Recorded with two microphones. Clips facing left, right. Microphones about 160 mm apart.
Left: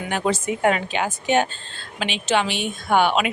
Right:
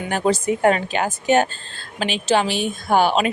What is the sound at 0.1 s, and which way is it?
Speech, 40° right (ahead or behind).